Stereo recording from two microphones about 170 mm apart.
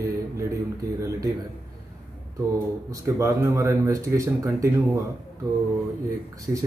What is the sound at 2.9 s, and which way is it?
Speech, 20° right (ahead or behind).